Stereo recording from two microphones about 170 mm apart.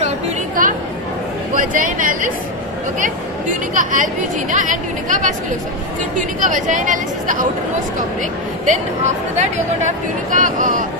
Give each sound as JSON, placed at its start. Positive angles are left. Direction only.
{"t": 0.6, "sound": "chatter", "side_deg": -55}
{"t": 1.5, "sound": "speech", "side_deg": -50}
{"t": 8.6, "sound": "speech", "side_deg": -45}